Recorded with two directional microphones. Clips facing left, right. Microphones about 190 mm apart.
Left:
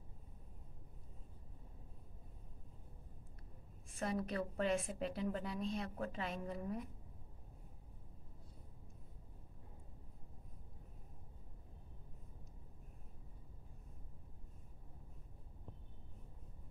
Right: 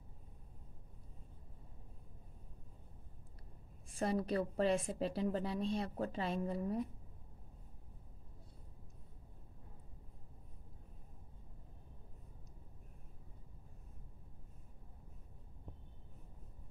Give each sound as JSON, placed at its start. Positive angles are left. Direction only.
{"t": 3.9, "sound": "a woman's voice", "side_deg": -35}